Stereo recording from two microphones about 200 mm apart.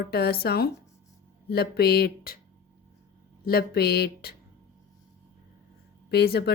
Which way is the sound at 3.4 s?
50° left (ahead or behind).